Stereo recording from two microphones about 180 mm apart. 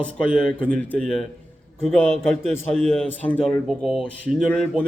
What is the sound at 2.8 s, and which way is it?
A man's voice, 5° left (ahead or behind).